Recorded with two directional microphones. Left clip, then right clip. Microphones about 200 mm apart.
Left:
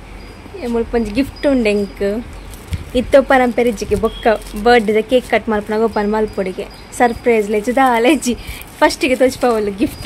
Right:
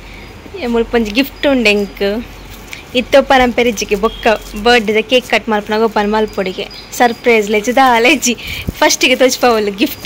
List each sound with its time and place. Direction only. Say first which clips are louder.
0.6 s speech: right 4 dB; centre (ahead or behind)